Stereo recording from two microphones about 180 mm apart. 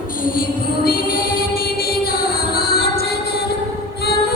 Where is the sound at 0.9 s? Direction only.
55° left (ahead or behind).